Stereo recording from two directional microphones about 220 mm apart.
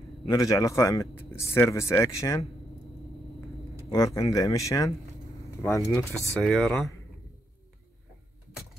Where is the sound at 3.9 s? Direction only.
15° left (ahead or behind).